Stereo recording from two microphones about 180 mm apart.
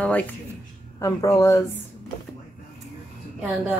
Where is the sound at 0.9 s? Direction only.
20° left (ahead or behind).